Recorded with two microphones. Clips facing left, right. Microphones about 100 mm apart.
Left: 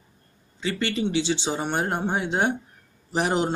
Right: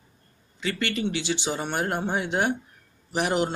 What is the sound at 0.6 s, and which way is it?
A man's voice, 25° left (ahead or behind).